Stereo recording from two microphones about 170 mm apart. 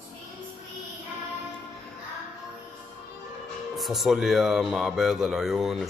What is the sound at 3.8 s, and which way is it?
Speech, centre (ahead or behind).